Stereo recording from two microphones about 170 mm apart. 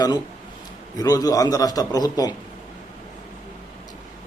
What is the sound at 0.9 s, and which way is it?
A man's voice, 20° left (ahead or behind).